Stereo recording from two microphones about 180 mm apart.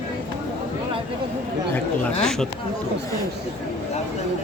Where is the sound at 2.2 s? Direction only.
Centre (ahead or behind).